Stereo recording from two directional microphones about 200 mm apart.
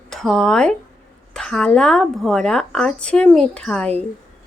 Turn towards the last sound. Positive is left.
turn(degrees=5)  # may be behind; listen again after turning